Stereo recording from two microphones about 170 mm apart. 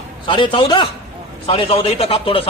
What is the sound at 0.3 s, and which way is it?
A man's voice, 30° left (ahead or behind).